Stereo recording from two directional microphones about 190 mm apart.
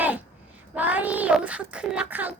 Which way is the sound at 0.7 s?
10° right (ahead or behind).